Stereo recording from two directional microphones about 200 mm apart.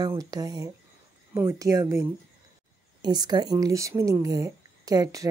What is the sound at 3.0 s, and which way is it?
Speech, 20° right (ahead or behind).